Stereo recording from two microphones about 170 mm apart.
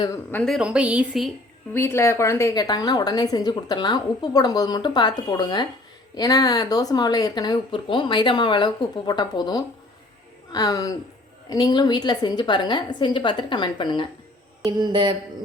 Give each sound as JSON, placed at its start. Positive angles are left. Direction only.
{"t": 0.3, "sound": "a woman's voice", "side_deg": 5}
{"t": 1.7, "sound": "a woman's voice", "side_deg": 15}
{"t": 14.6, "sound": "a sound", "side_deg": -25}